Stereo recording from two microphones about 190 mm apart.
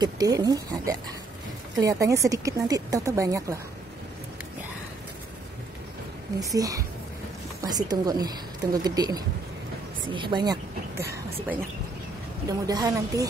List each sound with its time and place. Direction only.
0.0 s speech: 20° right (ahead or behind)
6.4 s speech: 20° right (ahead or behind)
11.0 s a sound: 55° right (ahead or behind)
12.4 s speech: 20° right (ahead or behind)